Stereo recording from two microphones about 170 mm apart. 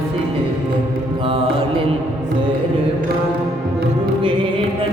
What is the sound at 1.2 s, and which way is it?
Mantra, 30° right (ahead or behind).